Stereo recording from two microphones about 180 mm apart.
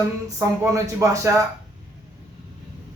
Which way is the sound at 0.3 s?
15° right (ahead or behind).